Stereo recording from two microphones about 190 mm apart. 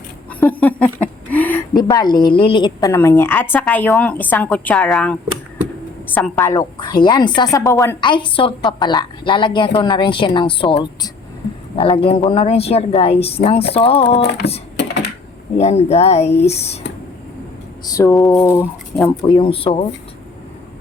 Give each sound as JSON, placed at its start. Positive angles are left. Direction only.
{"t": 0.3, "sound": "a sound", "side_deg": 10}
{"t": 1.7, "sound": "a woman's voice", "side_deg": 20}
{"t": 6.1, "sound": "a woman's voice", "side_deg": 10}
{"t": 8.0, "sound": "a woman's voice", "side_deg": 25}
{"t": 14.2, "sound": "music", "side_deg": 60}
{"t": 15.5, "sound": "a woman's voice", "side_deg": 35}
{"t": 17.8, "sound": "a woman's voice", "side_deg": 15}
{"t": 19.3, "sound": "a woman's voice", "side_deg": 30}